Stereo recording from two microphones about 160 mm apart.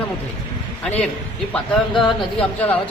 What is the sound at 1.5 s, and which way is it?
Speech, centre (ahead or behind).